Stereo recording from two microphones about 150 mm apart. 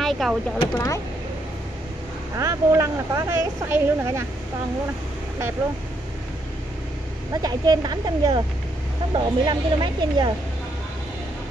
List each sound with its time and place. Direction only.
0.0 s speech: centre (ahead or behind)
0.7 s speech: 20° left (ahead or behind)
2.3 s speech: 20° right (ahead or behind)
7.4 s speech: 25° right (ahead or behind)